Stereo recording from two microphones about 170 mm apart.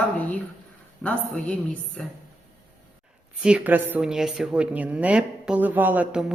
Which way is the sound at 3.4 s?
10° right (ahead or behind).